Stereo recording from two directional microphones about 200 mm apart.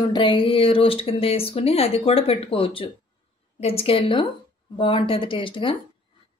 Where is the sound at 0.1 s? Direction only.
25° left (ahead or behind).